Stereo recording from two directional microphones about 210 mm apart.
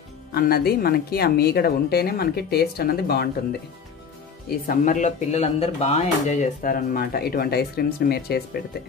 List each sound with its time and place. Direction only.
0.3 s speech: 45° left (ahead or behind)
4.6 s speech: 35° left (ahead or behind)